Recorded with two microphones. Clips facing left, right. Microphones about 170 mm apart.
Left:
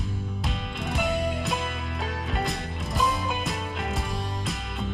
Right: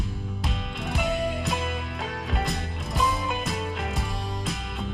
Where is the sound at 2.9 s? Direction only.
Centre (ahead or behind).